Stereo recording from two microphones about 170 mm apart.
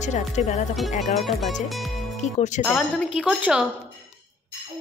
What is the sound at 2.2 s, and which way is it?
Speech, 45° left (ahead or behind).